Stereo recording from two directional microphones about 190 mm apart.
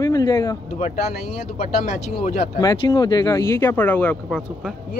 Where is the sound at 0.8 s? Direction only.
40° left (ahead or behind).